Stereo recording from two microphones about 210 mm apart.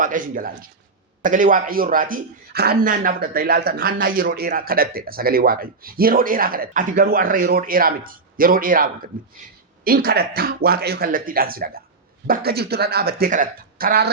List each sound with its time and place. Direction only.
0.0 s a man's voice: 40° right (ahead or behind)